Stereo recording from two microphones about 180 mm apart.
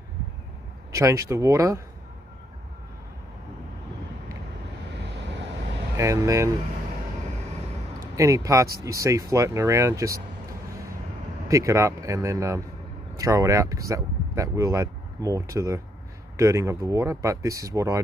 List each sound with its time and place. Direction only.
0.9 s speech: 15° right (ahead or behind)
4.9 s vehicle: 75° right (ahead or behind)
5.9 s speech: 15° right (ahead or behind)
8.2 s speech: 15° right (ahead or behind)
11.4 s speech: 15° right (ahead or behind)